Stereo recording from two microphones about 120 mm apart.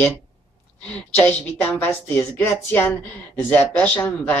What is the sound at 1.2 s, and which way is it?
Speech, 15° left (ahead or behind).